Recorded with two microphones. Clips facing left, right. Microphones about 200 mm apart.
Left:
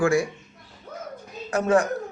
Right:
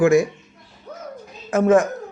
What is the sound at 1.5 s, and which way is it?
Speech, 20° right (ahead or behind).